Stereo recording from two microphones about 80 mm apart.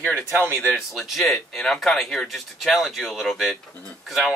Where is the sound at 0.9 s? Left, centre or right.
Centre.